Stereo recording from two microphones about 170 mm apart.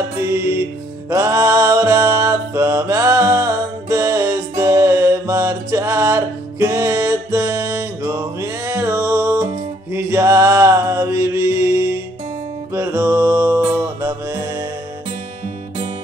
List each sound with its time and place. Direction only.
0.2 s music: 15° right (ahead or behind)
9.9 s mantra: 15° right (ahead or behind)
12.7 s music: 15° right (ahead or behind)